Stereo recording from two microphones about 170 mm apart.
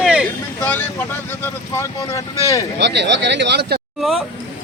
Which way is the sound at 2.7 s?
90° right.